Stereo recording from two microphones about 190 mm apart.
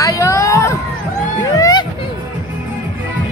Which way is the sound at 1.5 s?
20° left (ahead or behind).